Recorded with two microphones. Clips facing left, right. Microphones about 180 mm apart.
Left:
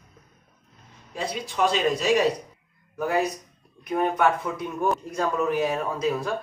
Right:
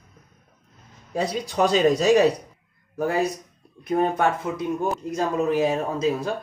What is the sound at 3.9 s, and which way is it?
Speech, 45° right (ahead or behind).